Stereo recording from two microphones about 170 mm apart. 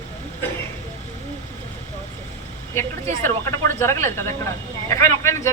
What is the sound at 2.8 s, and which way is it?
Speech, 15° left (ahead or behind).